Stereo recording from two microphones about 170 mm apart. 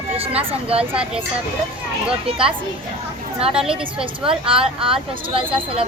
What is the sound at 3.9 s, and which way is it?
A woman's voice, 30° right (ahead or behind).